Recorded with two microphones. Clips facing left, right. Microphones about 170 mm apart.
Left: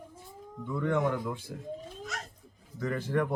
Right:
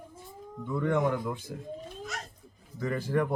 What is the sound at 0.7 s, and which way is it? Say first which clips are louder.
Speech: right 1 dB; 20° right (ahead or behind).